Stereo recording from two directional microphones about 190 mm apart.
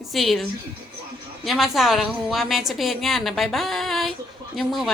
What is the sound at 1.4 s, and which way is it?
A woman's voice, centre (ahead or behind).